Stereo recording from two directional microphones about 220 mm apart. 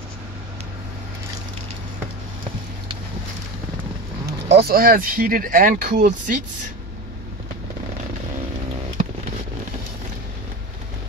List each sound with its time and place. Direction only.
4.5 s speech: 45° right (ahead or behind)